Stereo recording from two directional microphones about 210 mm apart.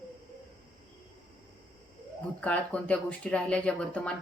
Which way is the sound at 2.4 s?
5° left (ahead or behind).